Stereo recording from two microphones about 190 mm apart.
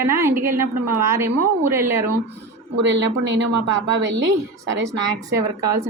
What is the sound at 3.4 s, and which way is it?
A woman's voice, 75° right (ahead or behind).